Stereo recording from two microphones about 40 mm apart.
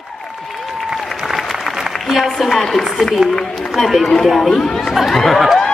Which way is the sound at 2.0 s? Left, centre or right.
Centre.